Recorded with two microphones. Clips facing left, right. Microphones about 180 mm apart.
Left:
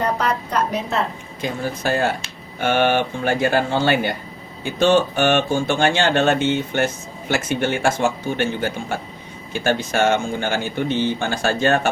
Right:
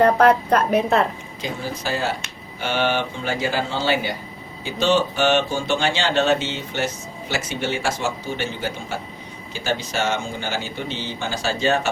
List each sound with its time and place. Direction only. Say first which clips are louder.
0.0 s a woman's voice: right 7 dB; 55° right (ahead or behind)
1.4 s speech: left 4 dB; 55° left (ahead or behind)